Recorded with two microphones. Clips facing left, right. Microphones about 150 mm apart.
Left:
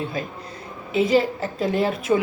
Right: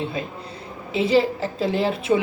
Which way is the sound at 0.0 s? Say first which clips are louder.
Even; 25° right (ahead or behind).